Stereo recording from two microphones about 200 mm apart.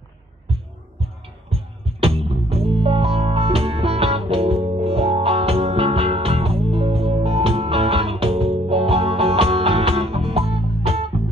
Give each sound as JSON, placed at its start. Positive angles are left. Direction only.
{"t": 1.5, "sound": "music", "side_deg": -30}